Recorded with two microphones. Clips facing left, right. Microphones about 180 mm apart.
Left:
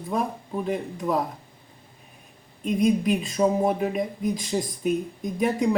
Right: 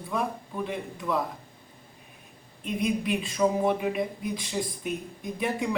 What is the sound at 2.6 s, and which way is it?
Speech, 40° left (ahead or behind).